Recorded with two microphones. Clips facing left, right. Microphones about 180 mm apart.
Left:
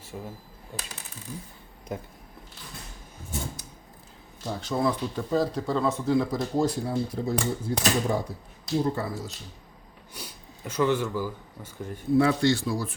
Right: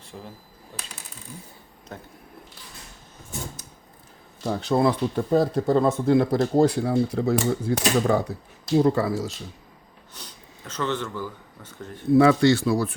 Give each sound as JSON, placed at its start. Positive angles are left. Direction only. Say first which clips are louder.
{"t": 0.1, "sound": "speech", "louder": "left 2 dB", "side_deg": 5}
{"t": 4.4, "sound": "speech", "louder": "right 5 dB", "side_deg": -65}
{"t": 8.7, "sound": "speech", "louder": "right 7 dB", "side_deg": -90}
{"t": 10.2, "sound": "speech", "louder": "left 2 dB", "side_deg": 10}
{"t": 12.1, "sound": "speech", "louder": "right 5 dB", "side_deg": -80}